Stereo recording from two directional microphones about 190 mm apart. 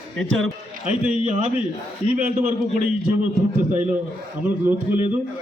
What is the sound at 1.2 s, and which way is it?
A man's voice, 35° right (ahead or behind).